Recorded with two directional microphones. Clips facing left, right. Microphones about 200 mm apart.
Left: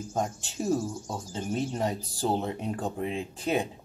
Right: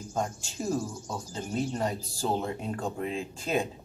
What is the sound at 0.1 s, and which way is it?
Speech, 15° left (ahead or behind).